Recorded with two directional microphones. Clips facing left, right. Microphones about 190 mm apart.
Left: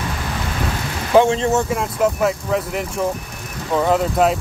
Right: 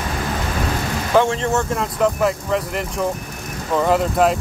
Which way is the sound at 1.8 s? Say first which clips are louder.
Even; centre (ahead or behind).